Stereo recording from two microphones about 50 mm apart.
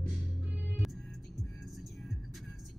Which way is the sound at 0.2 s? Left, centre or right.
Right.